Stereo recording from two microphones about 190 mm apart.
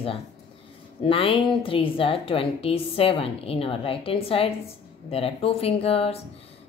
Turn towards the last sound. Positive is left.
turn(degrees=30)  # may be behind; listen again after turning